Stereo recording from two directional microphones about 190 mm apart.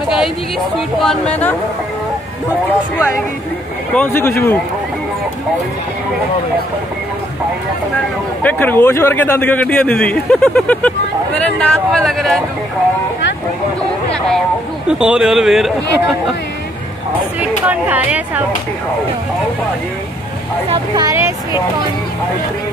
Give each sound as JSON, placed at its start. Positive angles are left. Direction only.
{"t": 0.9, "sound": "speech", "side_deg": 5}
{"t": 3.9, "sound": "a man's voice", "side_deg": 10}
{"t": 8.4, "sound": "a man's voice", "side_deg": 10}
{"t": 14.9, "sound": "speech", "side_deg": -5}
{"t": 17.4, "sound": "speech", "side_deg": -10}
{"t": 20.7, "sound": "speech", "side_deg": -20}